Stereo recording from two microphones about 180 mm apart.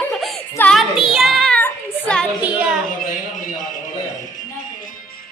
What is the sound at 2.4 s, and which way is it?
Speech, 5° right (ahead or behind).